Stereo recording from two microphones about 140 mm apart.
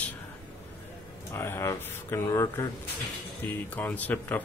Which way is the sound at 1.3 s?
20° left (ahead or behind).